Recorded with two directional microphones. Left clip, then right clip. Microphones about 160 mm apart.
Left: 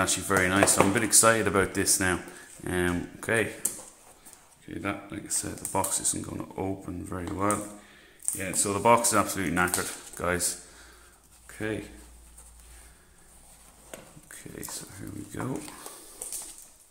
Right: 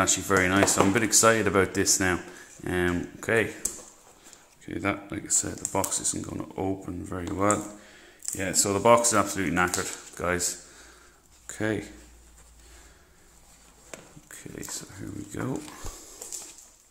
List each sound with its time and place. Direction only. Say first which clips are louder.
0.0 s speech: right 2 dB; 15° right (ahead or behind)
4.6 s speech: right 4 dB; 30° right (ahead or behind)
5.5 s speech: right 1 dB; 10° right (ahead or behind)
11.4 s speech: right 4 dB; 35° right (ahead or behind)
13.8 s speech: right 1 dB; 15° right (ahead or behind)